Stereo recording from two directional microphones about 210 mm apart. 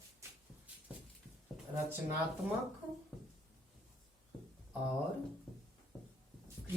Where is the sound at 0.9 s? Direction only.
5° right (ahead or behind).